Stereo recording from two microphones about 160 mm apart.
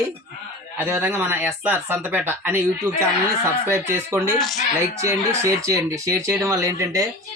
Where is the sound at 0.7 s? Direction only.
15° right (ahead or behind).